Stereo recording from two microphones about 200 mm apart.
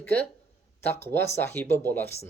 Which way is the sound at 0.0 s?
10° left (ahead or behind).